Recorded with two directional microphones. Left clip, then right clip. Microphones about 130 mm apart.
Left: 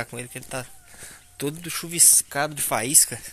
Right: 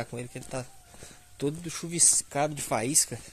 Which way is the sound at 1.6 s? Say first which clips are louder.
Left 6 dB; 15° right (ahead or behind).